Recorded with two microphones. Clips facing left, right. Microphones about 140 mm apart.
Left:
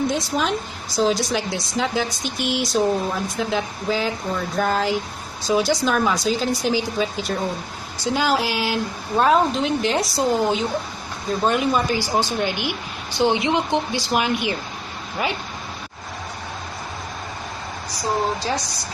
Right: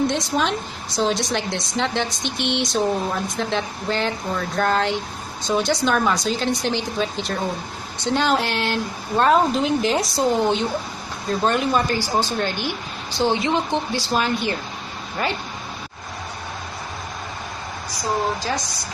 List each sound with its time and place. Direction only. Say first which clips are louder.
0.0 s a woman's voice: right 1 dB; centre (ahead or behind)